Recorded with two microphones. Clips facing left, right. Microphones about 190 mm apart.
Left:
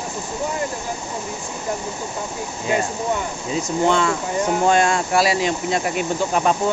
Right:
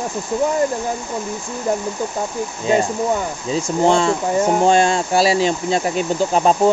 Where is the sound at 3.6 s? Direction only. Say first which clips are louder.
Right 3 dB; 30° right (ahead or behind).